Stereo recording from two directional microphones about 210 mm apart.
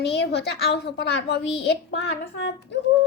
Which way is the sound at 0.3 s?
50° left (ahead or behind).